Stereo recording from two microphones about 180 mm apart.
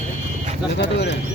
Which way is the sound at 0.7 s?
75° left (ahead or behind).